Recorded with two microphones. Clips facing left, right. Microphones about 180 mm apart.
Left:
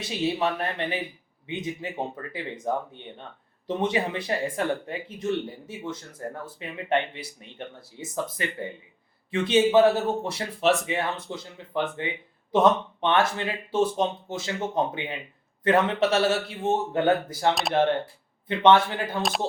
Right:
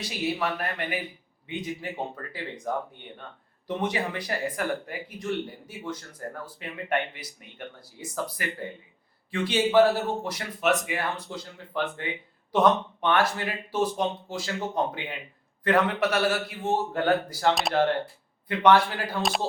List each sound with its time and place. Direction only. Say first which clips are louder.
0.0 s speech: left 3 dB; 25° left (ahead or behind)
17.5 s speech: right 1 dB; centre (ahead or behind)
18.4 s speech: left 1 dB; 25° left (ahead or behind)